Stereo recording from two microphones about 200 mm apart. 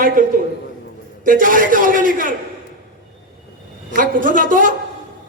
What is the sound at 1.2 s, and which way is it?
A man's voice, 45° right (ahead or behind).